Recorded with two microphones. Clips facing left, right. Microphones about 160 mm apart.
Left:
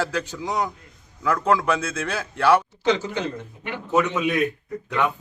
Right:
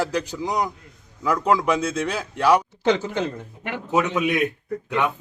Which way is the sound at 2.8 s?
50° right (ahead or behind).